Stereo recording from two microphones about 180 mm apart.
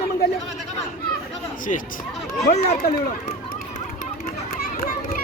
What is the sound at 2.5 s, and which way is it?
Speech, 60° left (ahead or behind).